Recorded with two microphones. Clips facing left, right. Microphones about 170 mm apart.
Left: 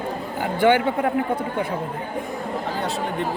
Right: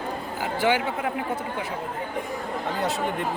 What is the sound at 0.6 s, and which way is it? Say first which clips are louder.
Speech: left 6 dB; 55° left (ahead or behind).